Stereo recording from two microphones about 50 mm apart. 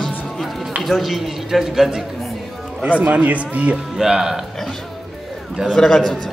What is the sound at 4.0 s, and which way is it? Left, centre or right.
Speech, centre.